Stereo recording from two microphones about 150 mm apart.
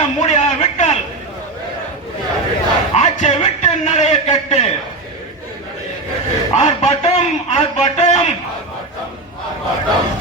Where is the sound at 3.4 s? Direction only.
50° left (ahead or behind).